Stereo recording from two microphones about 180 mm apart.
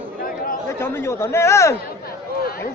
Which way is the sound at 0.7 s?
15° left (ahead or behind).